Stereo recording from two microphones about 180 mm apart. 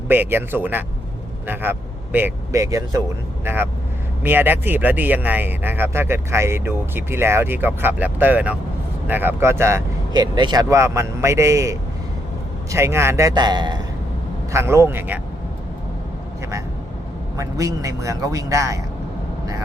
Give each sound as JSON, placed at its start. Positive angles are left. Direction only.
{"t": 0.1, "sound": "speech", "side_deg": -10}
{"t": 2.1, "sound": "speech", "side_deg": -15}
{"t": 17.3, "sound": "speech", "side_deg": -20}